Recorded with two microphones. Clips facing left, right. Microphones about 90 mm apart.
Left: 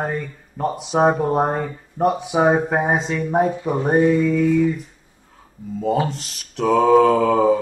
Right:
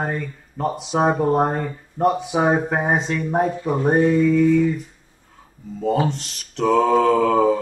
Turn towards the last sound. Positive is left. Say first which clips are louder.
# left 1 dB
turn(degrees=5)  # may be behind; listen again after turning